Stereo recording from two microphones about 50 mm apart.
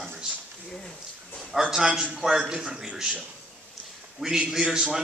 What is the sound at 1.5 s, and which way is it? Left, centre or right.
A man's voice, centre.